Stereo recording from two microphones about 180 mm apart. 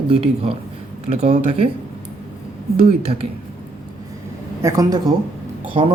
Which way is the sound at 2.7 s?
35° right (ahead or behind).